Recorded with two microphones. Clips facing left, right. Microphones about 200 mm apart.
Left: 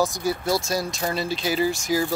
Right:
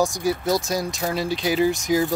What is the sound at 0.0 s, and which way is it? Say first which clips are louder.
Speech: right 2 dB; 15° right (ahead or behind).